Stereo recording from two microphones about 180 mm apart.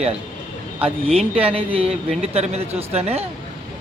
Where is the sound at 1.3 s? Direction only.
30° right (ahead or behind).